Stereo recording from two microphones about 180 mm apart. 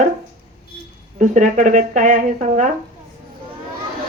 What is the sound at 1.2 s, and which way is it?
Speech, 45° right (ahead or behind).